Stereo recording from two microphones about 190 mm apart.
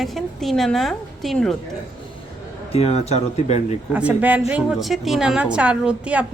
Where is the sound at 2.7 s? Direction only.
30° left (ahead or behind).